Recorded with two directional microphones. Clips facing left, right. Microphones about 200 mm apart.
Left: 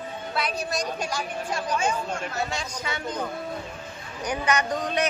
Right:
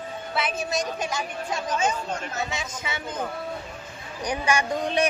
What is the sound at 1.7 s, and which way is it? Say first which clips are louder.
Speech: right 1 dB; 20° right (ahead or behind).